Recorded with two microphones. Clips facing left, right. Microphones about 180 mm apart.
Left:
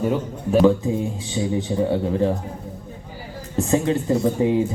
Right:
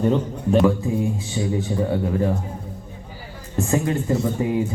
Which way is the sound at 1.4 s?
20° left (ahead or behind).